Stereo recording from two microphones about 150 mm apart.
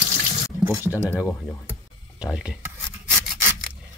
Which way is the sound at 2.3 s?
5° right (ahead or behind).